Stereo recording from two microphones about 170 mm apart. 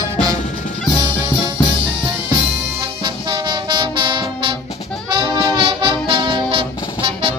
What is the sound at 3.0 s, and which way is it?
Music, 25° right (ahead or behind).